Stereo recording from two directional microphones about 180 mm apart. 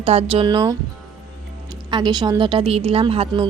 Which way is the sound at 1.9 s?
25° right (ahead or behind).